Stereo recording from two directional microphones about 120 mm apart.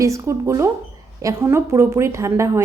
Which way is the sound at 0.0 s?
25° right (ahead or behind).